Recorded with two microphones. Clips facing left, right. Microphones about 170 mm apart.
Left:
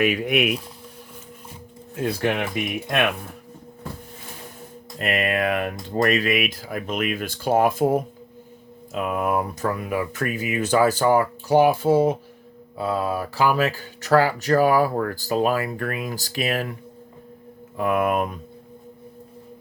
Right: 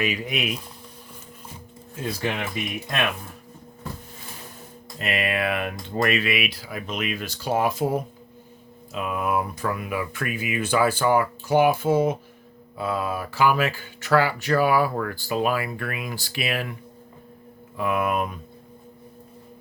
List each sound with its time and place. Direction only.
0.0 s speech: 60° left (ahead or behind)
2.0 s speech: 60° left (ahead or behind)
4.9 s speech: 50° left (ahead or behind)
17.7 s speech: 50° left (ahead or behind)